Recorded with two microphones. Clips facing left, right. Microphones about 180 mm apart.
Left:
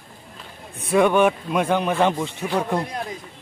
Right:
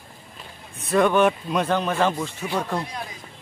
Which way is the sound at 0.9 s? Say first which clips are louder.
Left 1 dB; 10° left (ahead or behind).